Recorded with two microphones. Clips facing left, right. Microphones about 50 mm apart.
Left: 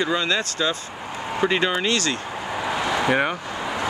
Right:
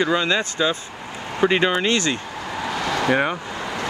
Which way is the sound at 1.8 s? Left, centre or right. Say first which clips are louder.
Right 2 dB; right.